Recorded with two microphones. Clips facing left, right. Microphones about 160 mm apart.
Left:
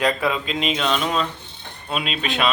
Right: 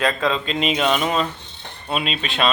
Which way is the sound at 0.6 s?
5° right (ahead or behind).